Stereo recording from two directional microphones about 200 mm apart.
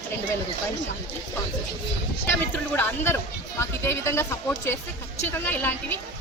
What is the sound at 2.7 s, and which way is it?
Speech, 10° left (ahead or behind).